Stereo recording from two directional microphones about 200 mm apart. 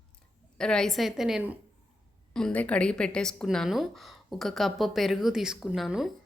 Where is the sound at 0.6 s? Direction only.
5° left (ahead or behind).